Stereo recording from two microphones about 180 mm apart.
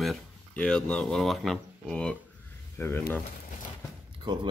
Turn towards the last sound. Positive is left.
turn(degrees=-25)  # may be behind; listen again after turning